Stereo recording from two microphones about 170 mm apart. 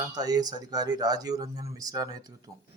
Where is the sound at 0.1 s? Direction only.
20° right (ahead or behind).